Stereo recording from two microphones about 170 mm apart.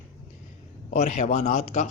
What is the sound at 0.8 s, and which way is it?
Speech, 45° left (ahead or behind).